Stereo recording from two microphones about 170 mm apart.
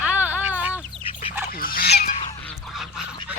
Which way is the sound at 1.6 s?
60° left (ahead or behind).